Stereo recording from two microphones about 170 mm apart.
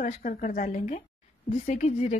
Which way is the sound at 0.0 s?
50° left (ahead or behind).